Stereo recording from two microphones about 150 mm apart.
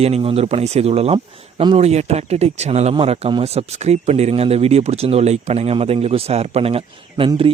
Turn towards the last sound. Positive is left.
turn(degrees=-40)  # may be behind; listen again after turning